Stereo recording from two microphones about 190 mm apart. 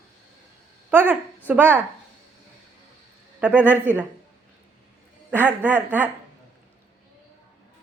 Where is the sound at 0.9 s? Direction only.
10° right (ahead or behind).